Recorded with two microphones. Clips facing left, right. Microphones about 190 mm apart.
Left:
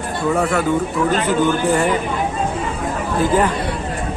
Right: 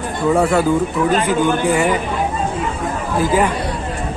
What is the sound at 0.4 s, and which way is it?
Speech, 30° right (ahead or behind).